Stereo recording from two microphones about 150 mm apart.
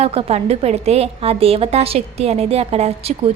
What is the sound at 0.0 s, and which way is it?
A woman's voice, 40° right (ahead or behind).